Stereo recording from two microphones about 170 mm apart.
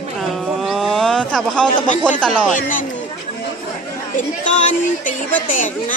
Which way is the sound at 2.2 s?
5° left (ahead or behind).